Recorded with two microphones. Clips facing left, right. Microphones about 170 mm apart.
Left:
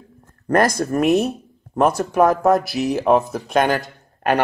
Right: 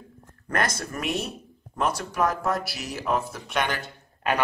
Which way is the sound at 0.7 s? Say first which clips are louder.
Left 13 dB; 45° left (ahead or behind).